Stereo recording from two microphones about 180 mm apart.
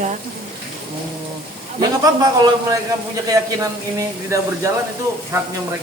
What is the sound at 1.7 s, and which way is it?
Speech, 20° right (ahead or behind).